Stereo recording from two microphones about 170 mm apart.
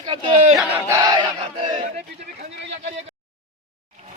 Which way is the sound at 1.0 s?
25° right (ahead or behind).